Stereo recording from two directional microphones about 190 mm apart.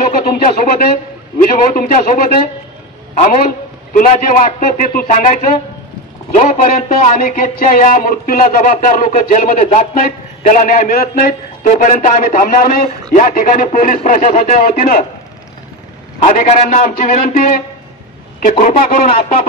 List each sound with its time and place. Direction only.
0.1 s speech: 50° left (ahead or behind)
3.9 s speech: 45° left (ahead or behind)
16.3 s speech: 45° left (ahead or behind)